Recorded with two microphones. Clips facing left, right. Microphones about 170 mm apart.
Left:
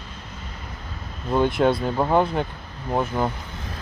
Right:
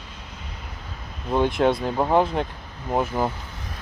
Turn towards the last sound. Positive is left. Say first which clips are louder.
# even
turn(degrees=-5)  # may be behind; listen again after turning